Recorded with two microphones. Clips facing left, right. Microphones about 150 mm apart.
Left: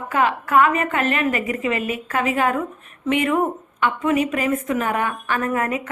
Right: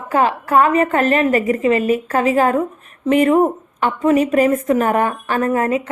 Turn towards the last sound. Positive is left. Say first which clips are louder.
# right 5 dB
turn(degrees=-30)  # may be behind; listen again after turning